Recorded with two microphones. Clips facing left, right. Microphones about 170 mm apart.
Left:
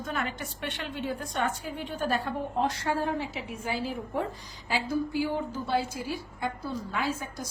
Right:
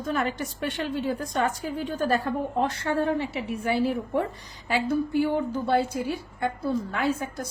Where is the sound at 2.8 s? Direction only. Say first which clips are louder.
Right 4 dB; 60° right (ahead or behind).